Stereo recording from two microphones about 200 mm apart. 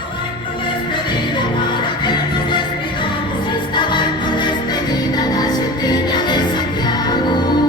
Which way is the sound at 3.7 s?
20° left (ahead or behind).